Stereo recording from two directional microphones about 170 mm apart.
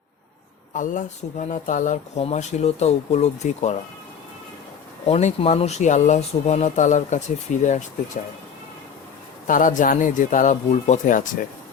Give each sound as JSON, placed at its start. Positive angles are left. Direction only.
{"t": 0.7, "sound": "speech", "side_deg": 50}
{"t": 5.0, "sound": "speech", "side_deg": 35}
{"t": 9.5, "sound": "speech", "side_deg": 50}